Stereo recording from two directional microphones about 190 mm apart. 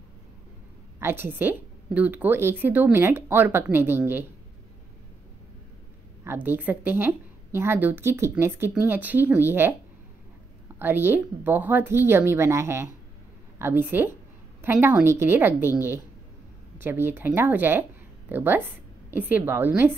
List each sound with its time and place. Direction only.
0.9 s a woman's voice: 10° right (ahead or behind)
6.2 s a woman's voice: 10° right (ahead or behind)
10.8 s a woman's voice: 10° right (ahead or behind)